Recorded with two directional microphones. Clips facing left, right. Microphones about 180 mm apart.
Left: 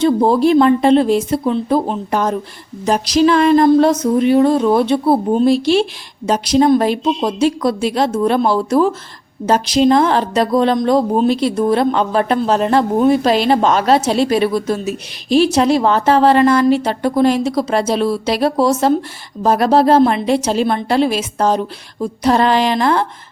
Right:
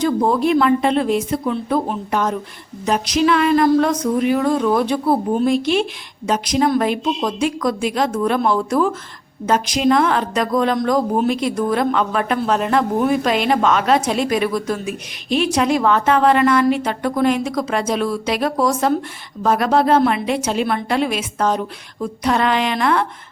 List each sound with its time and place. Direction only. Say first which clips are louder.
0.0 s speech: left 4 dB; 30° left (ahead or behind)